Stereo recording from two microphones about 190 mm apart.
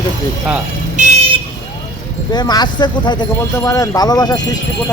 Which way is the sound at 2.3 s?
20° left (ahead or behind).